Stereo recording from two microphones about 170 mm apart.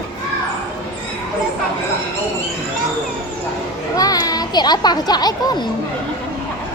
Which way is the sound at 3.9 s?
20° left (ahead or behind).